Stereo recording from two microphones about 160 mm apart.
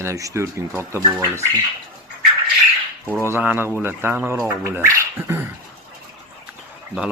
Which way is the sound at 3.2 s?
15° right (ahead or behind).